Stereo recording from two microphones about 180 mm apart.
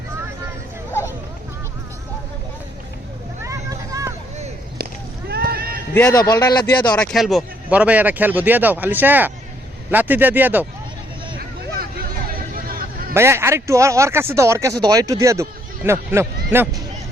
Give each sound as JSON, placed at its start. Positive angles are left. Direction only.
{"t": 3.4, "sound": "vehicle", "side_deg": -15}
{"t": 5.3, "sound": "run", "side_deg": -60}
{"t": 5.9, "sound": "speech", "side_deg": 15}
{"t": 6.9, "sound": "speech", "side_deg": 5}
{"t": 11.3, "sound": "vehicle", "side_deg": -55}
{"t": 12.6, "sound": "a sound", "side_deg": -55}
{"t": 13.1, "sound": "speech", "side_deg": -15}